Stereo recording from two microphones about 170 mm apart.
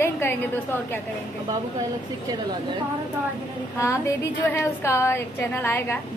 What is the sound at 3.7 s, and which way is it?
A woman's voice, 15° left (ahead or behind).